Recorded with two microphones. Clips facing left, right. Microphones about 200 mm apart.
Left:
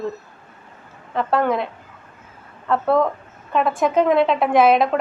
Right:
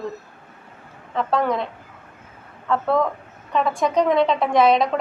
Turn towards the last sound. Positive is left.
turn(degrees=5)  # may be behind; listen again after turning